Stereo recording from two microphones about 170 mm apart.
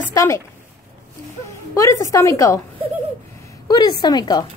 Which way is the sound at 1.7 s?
20° left (ahead or behind).